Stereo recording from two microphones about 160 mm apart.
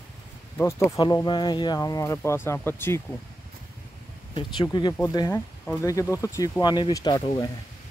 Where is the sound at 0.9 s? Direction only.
30° left (ahead or behind).